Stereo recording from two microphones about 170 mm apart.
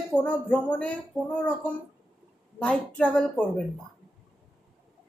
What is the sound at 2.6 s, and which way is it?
Speech, 10° left (ahead or behind).